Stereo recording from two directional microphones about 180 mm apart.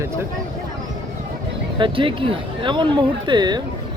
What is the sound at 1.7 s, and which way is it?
Speech, 30° right (ahead or behind).